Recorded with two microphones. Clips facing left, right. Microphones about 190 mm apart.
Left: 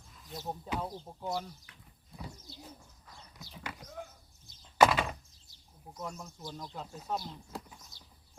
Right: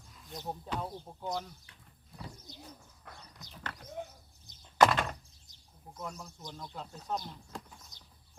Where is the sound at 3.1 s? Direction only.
65° right (ahead or behind).